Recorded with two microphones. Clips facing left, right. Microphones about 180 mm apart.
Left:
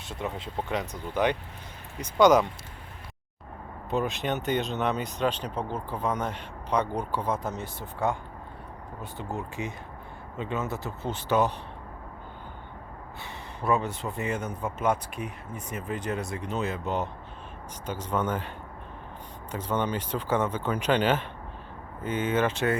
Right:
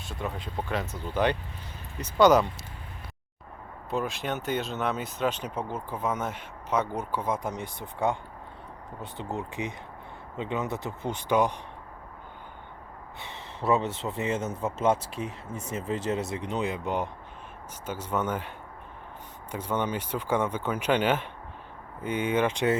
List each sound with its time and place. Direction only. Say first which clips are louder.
0.2 s speech: left 1 dB; 25° left (ahead or behind)
1.1 s speech: even; 10° left (ahead or behind)
3.8 s speech: left 2 dB; centre (ahead or behind)
13.2 s speech: right 1 dB; 20° right (ahead or behind)